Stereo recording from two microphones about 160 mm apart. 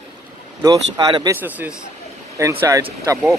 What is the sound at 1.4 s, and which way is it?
A man's voice, 10° right (ahead or behind).